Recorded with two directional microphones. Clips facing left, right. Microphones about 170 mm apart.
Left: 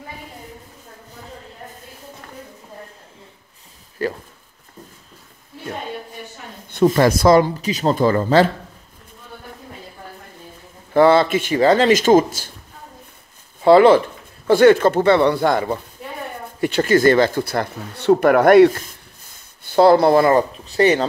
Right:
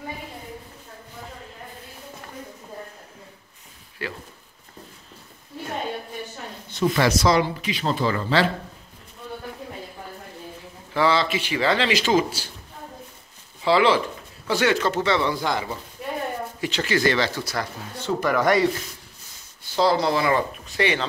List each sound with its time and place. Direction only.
4.0 s speech: 45° left (ahead or behind)
6.7 s speech: 50° left (ahead or behind)
10.9 s speech: 50° left (ahead or behind)
13.6 s speech: 50° left (ahead or behind)